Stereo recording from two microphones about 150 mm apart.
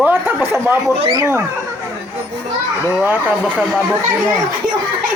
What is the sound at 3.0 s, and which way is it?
Speech, 10° right (ahead or behind).